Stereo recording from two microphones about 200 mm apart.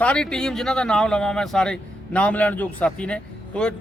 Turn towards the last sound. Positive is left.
turn(degrees=5)  # may be behind; listen again after turning